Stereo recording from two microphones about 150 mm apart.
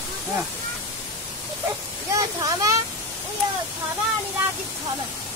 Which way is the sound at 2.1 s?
25° right (ahead or behind).